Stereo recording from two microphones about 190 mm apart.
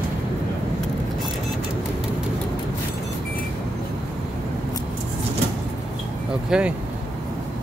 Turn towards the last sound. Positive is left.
turn(degrees=-5)  # may be behind; listen again after turning